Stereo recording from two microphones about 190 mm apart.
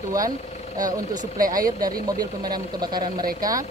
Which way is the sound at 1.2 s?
45° right (ahead or behind).